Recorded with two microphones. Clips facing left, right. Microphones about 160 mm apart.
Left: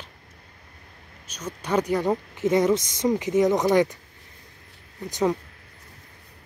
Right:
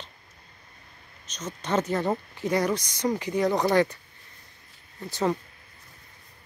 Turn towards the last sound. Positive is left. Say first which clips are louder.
# left 3 dB
turn(degrees=15)  # may be behind; listen again after turning